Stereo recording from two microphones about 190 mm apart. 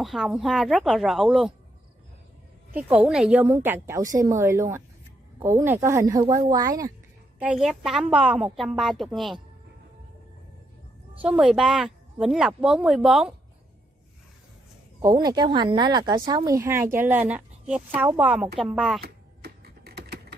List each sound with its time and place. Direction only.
0.0 s a woman's voice: centre (ahead or behind)
2.7 s speech: 10° right (ahead or behind)
7.3 s a woman's voice: 5° right (ahead or behind)
11.1 s a woman's voice: 5° right (ahead or behind)
15.0 s a woman's voice: 20° right (ahead or behind); by 18.9 s centre (ahead or behind)
19.0 s typing: 55° right (ahead or behind)